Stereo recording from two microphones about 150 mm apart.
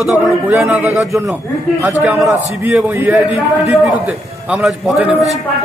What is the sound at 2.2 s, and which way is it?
A man's voice, 10° right (ahead or behind).